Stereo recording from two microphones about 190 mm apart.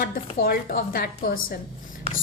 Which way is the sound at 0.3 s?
50° left (ahead or behind).